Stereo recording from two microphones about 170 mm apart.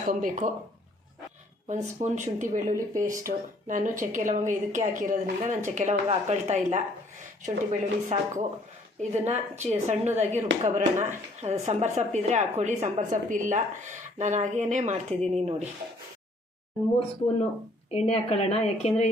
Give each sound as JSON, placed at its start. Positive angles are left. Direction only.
{"t": 0.0, "sound": "speech", "side_deg": -55}
{"t": 1.6, "sound": "speech", "side_deg": -45}
{"t": 2.7, "sound": "speech", "side_deg": -20}
{"t": 3.1, "sound": "speech", "side_deg": -50}
{"t": 17.9, "sound": "a woman's voice", "side_deg": 35}